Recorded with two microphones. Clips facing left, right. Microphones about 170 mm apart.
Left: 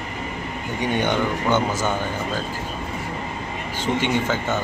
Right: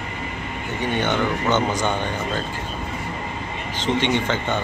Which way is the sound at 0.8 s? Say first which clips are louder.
Even; 10° left (ahead or behind).